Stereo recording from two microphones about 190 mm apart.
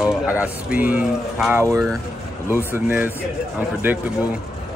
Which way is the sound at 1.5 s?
15° right (ahead or behind).